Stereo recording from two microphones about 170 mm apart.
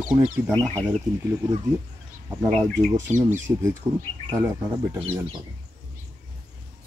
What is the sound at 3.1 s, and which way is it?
Speech, 45° right (ahead or behind).